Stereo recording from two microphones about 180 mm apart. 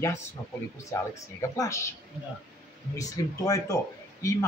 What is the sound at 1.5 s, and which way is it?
Speech, 15° left (ahead or behind).